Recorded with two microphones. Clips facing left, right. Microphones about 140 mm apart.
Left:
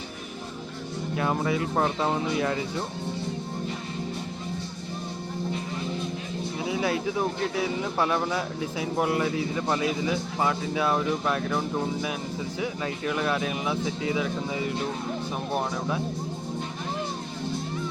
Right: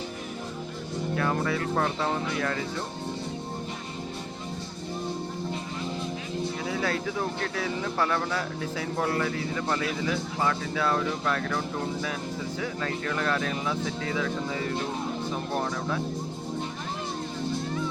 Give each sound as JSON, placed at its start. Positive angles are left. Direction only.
{"t": 1.1, "sound": "speech", "side_deg": 15}
{"t": 6.7, "sound": "speech", "side_deg": 15}